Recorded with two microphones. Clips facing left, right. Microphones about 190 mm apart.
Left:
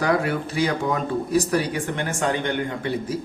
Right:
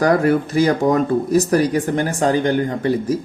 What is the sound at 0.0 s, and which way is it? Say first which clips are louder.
Speech: right 7 dB; 45° right (ahead or behind).